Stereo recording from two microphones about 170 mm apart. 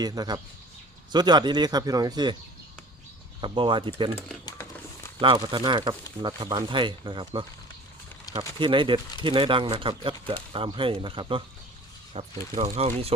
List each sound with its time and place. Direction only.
0.0 s speech: 25° right (ahead or behind)
3.4 s speech: 30° right (ahead or behind)
5.2 s speech: 30° right (ahead or behind)
8.5 s speech: 30° right (ahead or behind)